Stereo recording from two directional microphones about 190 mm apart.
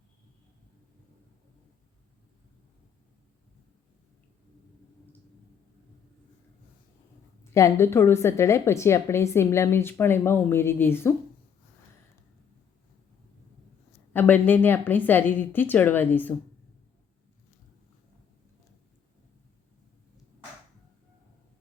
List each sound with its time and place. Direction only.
7.5 s a woman's voice: 15° left (ahead or behind)
14.1 s a woman's voice: 10° left (ahead or behind)